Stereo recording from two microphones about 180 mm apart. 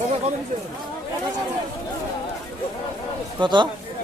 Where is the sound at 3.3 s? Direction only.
25° right (ahead or behind).